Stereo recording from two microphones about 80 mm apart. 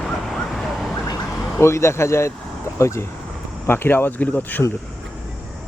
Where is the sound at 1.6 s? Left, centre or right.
Left.